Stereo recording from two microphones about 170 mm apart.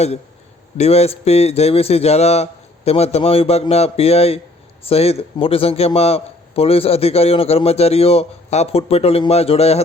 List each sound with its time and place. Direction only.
0.8 s a man's voice: 40° left (ahead or behind)